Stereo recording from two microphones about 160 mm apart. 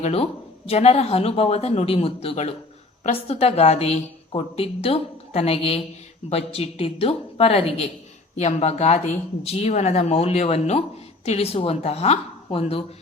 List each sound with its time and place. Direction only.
0.0 s a woman's voice: 40° left (ahead or behind)